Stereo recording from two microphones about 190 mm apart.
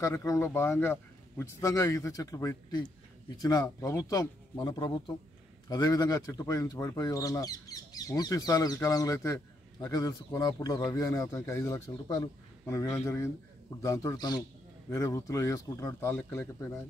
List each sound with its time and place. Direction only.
0.0 s speech: 15° left (ahead or behind)